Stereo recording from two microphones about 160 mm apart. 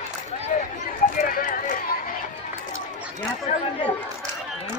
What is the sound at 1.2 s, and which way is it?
Clip-clop, 60° left (ahead or behind).